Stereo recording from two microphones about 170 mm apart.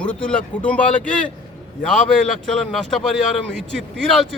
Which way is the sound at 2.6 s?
Centre (ahead or behind).